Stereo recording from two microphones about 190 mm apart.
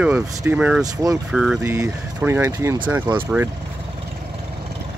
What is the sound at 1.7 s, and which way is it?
Speech, 15° right (ahead or behind).